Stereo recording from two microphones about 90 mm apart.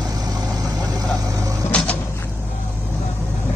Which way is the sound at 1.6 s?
30° left (ahead or behind).